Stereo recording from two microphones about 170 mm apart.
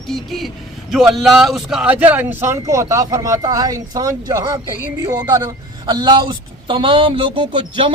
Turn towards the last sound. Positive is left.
turn(degrees=-30)  # may be behind; listen again after turning